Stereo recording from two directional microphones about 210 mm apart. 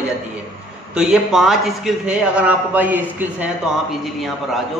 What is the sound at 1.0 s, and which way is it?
A man's voice, centre (ahead or behind).